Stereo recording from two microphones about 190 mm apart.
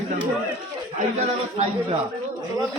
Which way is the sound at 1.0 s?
40° right (ahead or behind).